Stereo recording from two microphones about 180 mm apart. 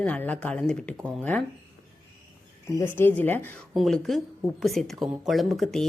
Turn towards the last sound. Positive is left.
turn(degrees=0)  # may be behind; listen again after turning